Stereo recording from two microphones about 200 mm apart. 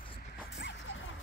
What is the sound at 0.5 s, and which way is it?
Music, 65° left (ahead or behind).